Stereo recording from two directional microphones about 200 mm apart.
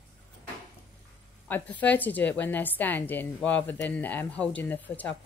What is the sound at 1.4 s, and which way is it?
A woman's voice, 10° left (ahead or behind).